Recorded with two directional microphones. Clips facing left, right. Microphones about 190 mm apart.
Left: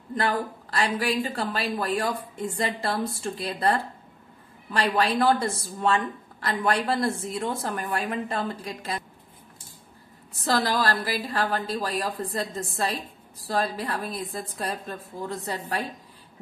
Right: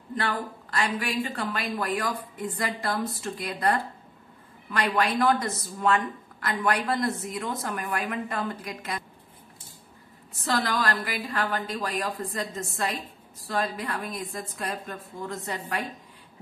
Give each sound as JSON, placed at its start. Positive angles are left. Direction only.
{"t": 0.2, "sound": "a woman's voice", "side_deg": 35}
{"t": 10.4, "sound": "a woman's voice", "side_deg": 40}